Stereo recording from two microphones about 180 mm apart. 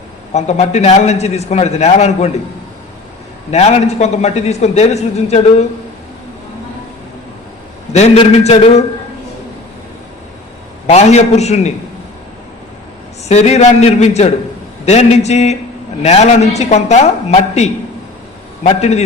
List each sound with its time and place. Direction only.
0.3 s a man's voice: 40° left (ahead or behind)
3.5 s a man's voice: 35° left (ahead or behind)
7.9 s a man's voice: 35° left (ahead or behind)
10.8 s a man's voice: 35° left (ahead or behind)
13.2 s a man's voice: 35° left (ahead or behind)